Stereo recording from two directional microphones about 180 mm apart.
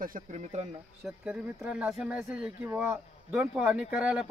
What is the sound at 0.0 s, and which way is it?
Speech, 45° right (ahead or behind).